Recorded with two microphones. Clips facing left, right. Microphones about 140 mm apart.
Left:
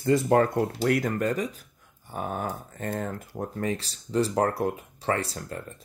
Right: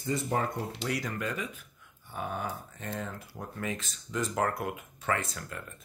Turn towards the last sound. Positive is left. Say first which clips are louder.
# left 4 dB
turn(degrees=35)  # may be behind; listen again after turning